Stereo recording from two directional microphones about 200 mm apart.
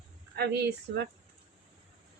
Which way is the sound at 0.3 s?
55° right (ahead or behind).